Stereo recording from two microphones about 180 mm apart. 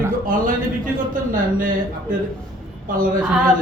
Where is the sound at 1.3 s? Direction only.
50° right (ahead or behind).